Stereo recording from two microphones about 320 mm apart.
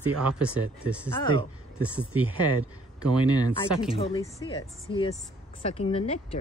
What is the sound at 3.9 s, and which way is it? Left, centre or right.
Speech, centre.